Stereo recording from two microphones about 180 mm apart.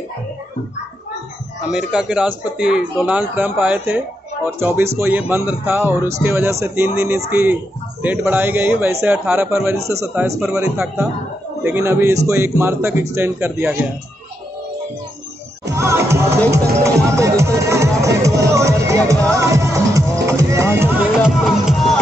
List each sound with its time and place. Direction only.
1.7 s speech: 5° right (ahead or behind)
10.4 s speech: 5° right (ahead or behind)
15.7 s music: 15° right (ahead or behind)